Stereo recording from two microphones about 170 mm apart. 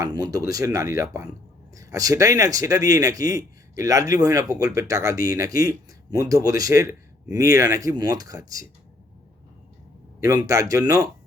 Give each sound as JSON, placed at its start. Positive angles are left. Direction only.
{"t": 0.0, "sound": "speech", "side_deg": -20}
{"t": 10.2, "sound": "speech", "side_deg": -20}